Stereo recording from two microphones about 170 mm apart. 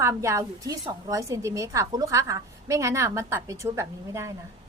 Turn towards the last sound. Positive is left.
turn(degrees=-15)  # may be behind; listen again after turning